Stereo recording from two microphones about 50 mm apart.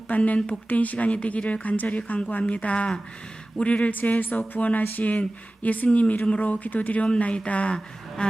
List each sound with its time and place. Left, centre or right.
0.1 s speech: left
3.9 s speech: left
8.2 s a sound: centre